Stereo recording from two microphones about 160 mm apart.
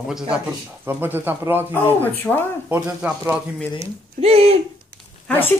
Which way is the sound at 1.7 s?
10° left (ahead or behind).